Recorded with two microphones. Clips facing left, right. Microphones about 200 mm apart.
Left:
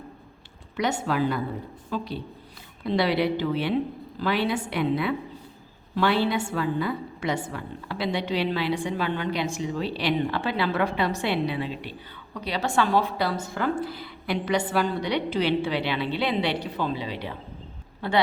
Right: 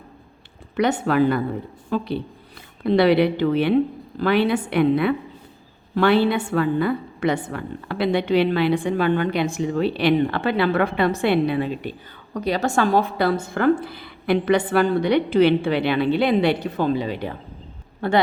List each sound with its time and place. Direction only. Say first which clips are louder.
0.8 s a woman's voice: right 6 dB; 60° right (ahead or behind)